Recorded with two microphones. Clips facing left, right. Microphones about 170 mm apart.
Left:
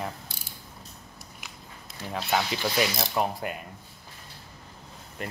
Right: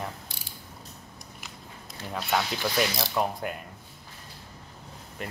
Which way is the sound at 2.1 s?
Centre (ahead or behind).